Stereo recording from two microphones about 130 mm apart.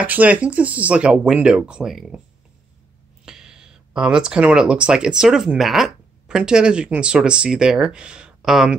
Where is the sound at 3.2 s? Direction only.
5° right (ahead or behind).